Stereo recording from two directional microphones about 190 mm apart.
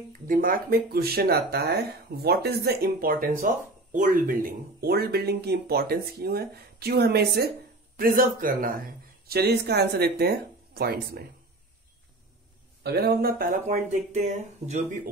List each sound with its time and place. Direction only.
0.3 s a man's voice: 45° right (ahead or behind)
12.8 s a man's voice: 55° right (ahead or behind); by 15.0 s 40° right (ahead or behind)